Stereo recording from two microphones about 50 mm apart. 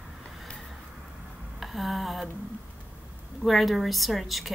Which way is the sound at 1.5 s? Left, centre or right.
Centre.